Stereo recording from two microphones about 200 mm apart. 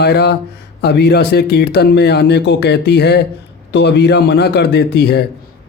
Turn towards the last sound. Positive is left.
turn(degrees=55)  # may be behind; listen again after turning